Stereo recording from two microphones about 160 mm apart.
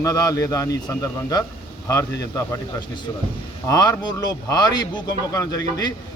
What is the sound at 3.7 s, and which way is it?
Speech, 25° left (ahead or behind).